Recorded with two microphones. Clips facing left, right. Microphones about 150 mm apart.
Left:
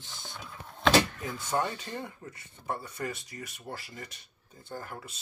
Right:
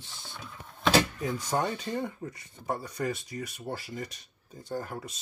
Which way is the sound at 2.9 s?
30° right (ahead or behind).